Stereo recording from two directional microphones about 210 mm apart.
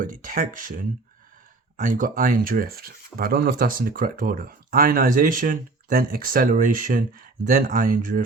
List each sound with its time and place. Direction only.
0.0 s speech: 40° right (ahead or behind)